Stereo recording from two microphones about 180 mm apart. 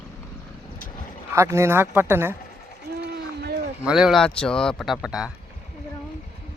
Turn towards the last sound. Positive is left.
turn(degrees=-5)  # may be behind; listen again after turning